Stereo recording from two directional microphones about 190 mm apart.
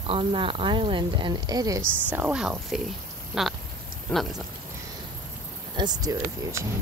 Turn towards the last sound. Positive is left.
turn(degrees=-15)  # may be behind; listen again after turning